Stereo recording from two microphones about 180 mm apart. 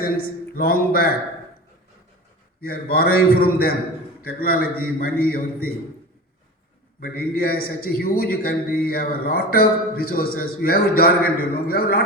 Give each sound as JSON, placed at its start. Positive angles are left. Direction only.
{"t": 0.2, "sound": "a man's voice", "side_deg": 55}
{"t": 2.6, "sound": "a man's voice", "side_deg": 55}
{"t": 7.0, "sound": "a man's voice", "side_deg": 55}